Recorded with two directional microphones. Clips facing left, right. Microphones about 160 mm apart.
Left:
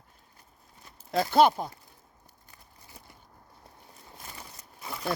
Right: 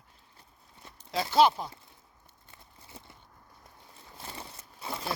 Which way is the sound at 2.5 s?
25° right (ahead or behind).